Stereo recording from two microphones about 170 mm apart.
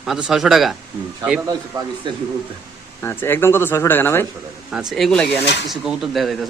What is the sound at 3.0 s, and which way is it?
A man's voice, 15° left (ahead or behind).